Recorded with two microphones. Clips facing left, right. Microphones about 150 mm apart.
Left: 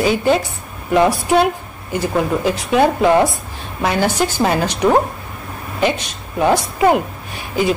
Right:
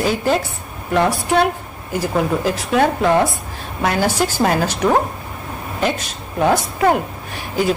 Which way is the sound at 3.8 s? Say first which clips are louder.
Left 1 dB; 5° right (ahead or behind).